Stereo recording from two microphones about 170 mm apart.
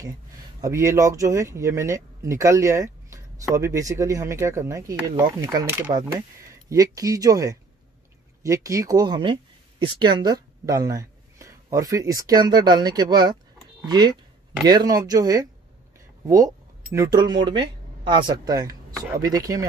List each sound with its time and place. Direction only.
0.6 s speech: 15° right (ahead or behind)
5.7 s speech: 10° right (ahead or behind)
16.9 s speech: 20° right (ahead or behind)